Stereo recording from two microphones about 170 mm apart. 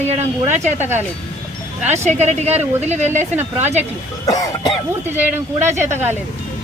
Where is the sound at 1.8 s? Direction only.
40° right (ahead or behind).